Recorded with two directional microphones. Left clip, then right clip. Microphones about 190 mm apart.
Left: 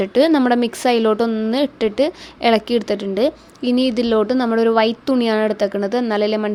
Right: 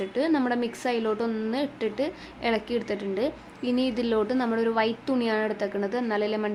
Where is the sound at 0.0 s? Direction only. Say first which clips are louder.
Left 11 dB; 45° left (ahead or behind).